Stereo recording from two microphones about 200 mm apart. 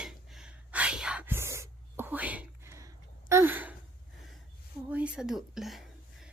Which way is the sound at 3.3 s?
10° right (ahead or behind).